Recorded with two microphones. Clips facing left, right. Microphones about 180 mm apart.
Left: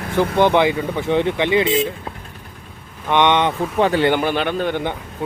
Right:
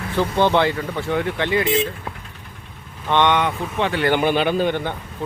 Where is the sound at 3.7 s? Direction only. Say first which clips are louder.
Left 6 dB; 40° left (ahead or behind).